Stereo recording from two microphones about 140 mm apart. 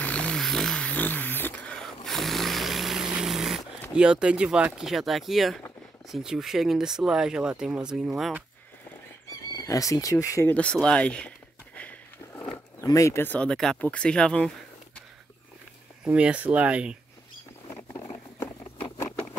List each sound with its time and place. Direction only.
0.0 s a sound: 10° left (ahead or behind)
3.9 s speech: 5° right (ahead or behind)
9.6 s speech: 25° left (ahead or behind)
10.5 s a sound: 10° left (ahead or behind)
12.4 s speech: 25° left (ahead or behind); by 14.5 s 5° left (ahead or behind)
16.1 s speech: 10° right (ahead or behind)
17.6 s rodents: 20° left (ahead or behind)